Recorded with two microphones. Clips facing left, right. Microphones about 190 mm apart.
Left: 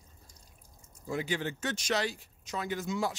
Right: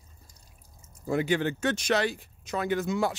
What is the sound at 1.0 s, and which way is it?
Speech, 60° right (ahead or behind).